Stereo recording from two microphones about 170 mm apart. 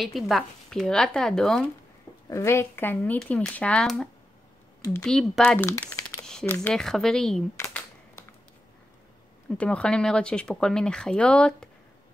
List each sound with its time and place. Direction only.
0.0 s speech: centre (ahead or behind)
2.2 s speech: 15° left (ahead or behind)
5.7 s crumpling: 20° left (ahead or behind)
6.0 s speech: 5° left (ahead or behind)
7.6 s a sound: 5° left (ahead or behind)
9.6 s speech: 5° left (ahead or behind)